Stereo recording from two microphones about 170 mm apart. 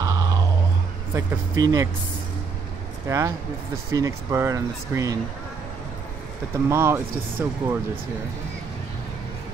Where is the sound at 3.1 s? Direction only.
20° right (ahead or behind).